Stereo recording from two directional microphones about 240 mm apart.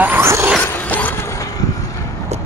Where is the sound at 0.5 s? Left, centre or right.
Centre.